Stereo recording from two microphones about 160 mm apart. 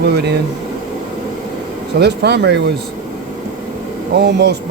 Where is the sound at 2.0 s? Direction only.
90° right.